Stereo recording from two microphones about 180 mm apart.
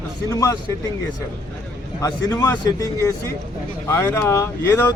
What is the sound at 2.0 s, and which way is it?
Speech, 20° left (ahead or behind).